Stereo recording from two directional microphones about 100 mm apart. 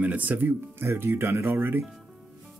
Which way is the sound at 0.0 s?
15° right (ahead or behind).